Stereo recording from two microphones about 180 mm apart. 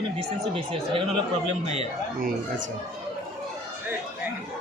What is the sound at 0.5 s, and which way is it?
A man's voice, 30° right (ahead or behind).